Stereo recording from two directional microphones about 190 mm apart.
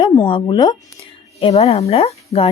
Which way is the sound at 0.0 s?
20° left (ahead or behind).